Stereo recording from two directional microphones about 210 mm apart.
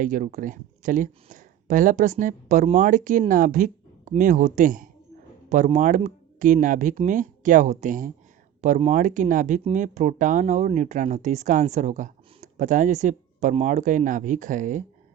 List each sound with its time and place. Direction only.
0.0 s speech: 40° right (ahead or behind)